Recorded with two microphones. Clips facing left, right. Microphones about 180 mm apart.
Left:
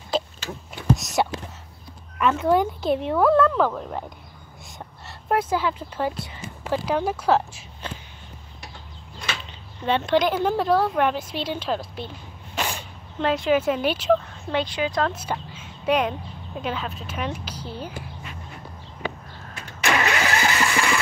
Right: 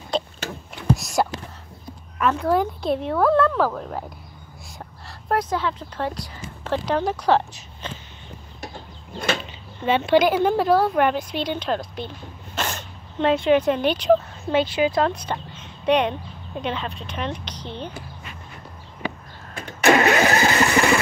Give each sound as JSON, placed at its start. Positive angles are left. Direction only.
{"t": 0.1, "sound": "a sound", "side_deg": 5}
{"t": 1.0, "sound": "a woman's voice", "side_deg": 0}
{"t": 5.3, "sound": "speech", "side_deg": 5}
{"t": 9.8, "sound": "a woman's voice", "side_deg": -5}
{"t": 12.5, "sound": "a sound", "side_deg": 10}
{"t": 13.2, "sound": "a woman's voice", "side_deg": 0}
{"t": 15.1, "sound": "speech", "side_deg": 5}
{"t": 19.8, "sound": "vehicle", "side_deg": -50}